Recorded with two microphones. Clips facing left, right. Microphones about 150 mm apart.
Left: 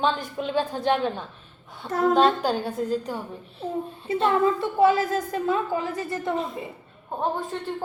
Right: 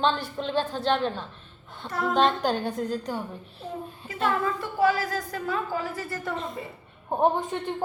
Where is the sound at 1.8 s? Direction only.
45° left (ahead or behind).